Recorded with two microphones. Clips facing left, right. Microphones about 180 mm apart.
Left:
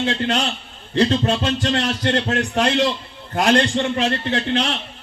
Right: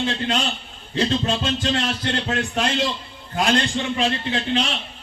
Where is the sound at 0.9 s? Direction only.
60° left (ahead or behind).